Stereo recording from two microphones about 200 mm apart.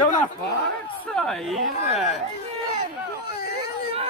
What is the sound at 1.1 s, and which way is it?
Speech, centre (ahead or behind).